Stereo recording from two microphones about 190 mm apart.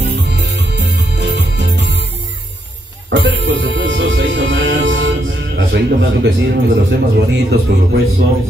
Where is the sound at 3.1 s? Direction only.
75° right (ahead or behind).